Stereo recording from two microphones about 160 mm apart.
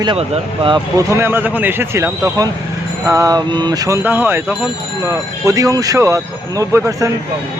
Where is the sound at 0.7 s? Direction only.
20° right (ahead or behind).